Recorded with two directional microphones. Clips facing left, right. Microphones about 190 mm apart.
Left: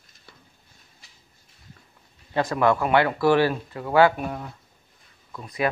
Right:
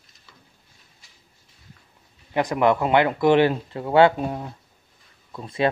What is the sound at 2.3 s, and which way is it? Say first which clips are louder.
Speech: right 1 dB; 15° right (ahead or behind).